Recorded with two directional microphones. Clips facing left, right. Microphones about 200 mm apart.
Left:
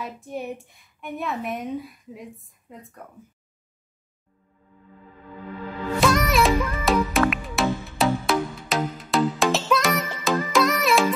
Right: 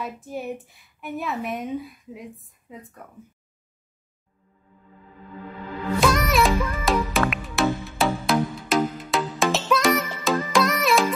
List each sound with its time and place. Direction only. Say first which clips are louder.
0.0 s a woman's voice: right 1 dB; centre (ahead or behind)
5.9 s music: even; centre (ahead or behind)